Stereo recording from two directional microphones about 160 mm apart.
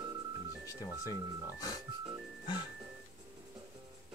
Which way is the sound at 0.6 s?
20° left (ahead or behind).